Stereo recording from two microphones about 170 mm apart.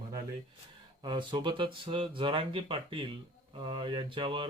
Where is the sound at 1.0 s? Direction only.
25° right (ahead or behind).